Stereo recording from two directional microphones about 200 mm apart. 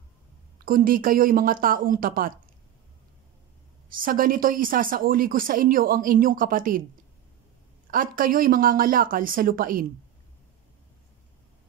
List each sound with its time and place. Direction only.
0.7 s a woman's voice: 45° right (ahead or behind)
3.9 s a woman's voice: 45° right (ahead or behind)
7.9 s a woman's voice: 45° right (ahead or behind)